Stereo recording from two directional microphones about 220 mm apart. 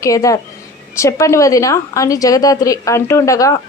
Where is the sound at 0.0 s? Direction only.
15° left (ahead or behind).